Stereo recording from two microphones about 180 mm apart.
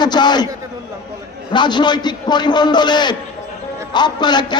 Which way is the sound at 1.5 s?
25° left (ahead or behind).